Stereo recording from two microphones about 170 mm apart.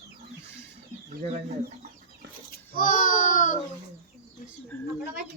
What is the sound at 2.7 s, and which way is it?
Speech, 55° left (ahead or behind).